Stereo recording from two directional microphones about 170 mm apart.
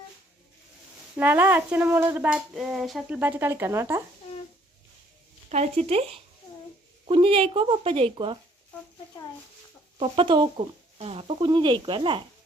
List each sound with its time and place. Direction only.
1.1 s speech: 10° right (ahead or behind)
5.5 s speech: 40° right (ahead or behind)
10.0 s speech: 30° right (ahead or behind)